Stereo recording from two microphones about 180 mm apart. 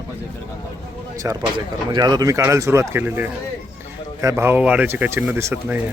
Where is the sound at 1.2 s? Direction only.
25° right (ahead or behind).